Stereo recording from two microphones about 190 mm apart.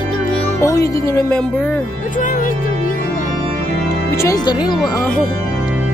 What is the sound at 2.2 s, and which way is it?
Speech, 45° left (ahead or behind).